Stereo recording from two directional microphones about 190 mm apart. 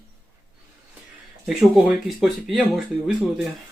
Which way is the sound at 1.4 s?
5° right (ahead or behind).